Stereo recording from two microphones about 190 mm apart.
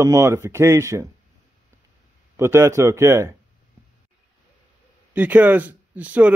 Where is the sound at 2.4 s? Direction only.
15° right (ahead or behind).